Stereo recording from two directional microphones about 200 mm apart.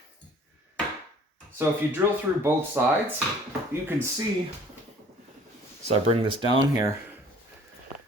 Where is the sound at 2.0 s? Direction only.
10° right (ahead or behind).